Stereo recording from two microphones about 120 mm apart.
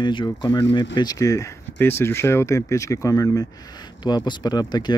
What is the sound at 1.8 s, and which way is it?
Speech, 20° left (ahead or behind).